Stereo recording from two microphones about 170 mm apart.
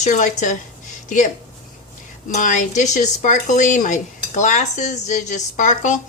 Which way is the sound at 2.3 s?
45° left (ahead or behind).